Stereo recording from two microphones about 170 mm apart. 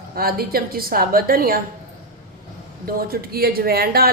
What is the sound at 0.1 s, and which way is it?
A woman's voice, 60° right (ahead or behind).